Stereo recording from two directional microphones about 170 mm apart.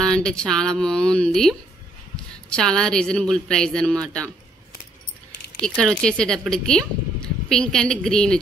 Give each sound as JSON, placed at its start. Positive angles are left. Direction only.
{"t": 0.0, "sound": "speech", "side_deg": 5}
{"t": 5.6, "sound": "speech", "side_deg": 5}